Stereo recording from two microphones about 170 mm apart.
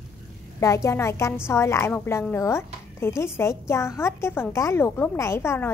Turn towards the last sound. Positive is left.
turn(degrees=15)  # may be behind; listen again after turning